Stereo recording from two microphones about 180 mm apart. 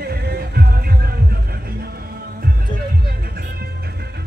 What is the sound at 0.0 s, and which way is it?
Music, 60° right (ahead or behind).